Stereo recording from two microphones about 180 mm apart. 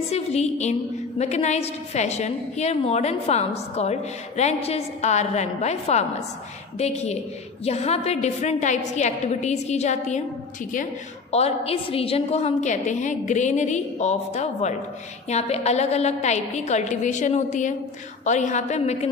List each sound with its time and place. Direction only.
0.1 s a woman's voice: 35° left (ahead or behind)
11.3 s a woman's voice: 35° left (ahead or behind)